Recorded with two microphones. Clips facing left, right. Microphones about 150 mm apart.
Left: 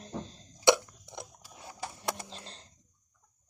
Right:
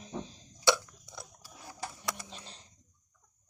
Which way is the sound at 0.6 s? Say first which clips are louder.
Left 4 dB; 20° left (ahead or behind).